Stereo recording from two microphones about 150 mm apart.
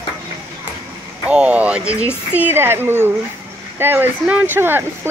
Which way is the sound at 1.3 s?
10° right (ahead or behind).